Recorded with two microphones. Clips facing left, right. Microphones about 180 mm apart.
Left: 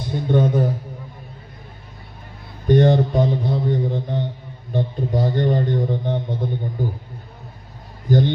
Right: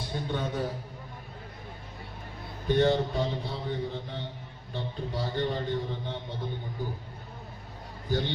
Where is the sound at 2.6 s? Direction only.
50° left (ahead or behind).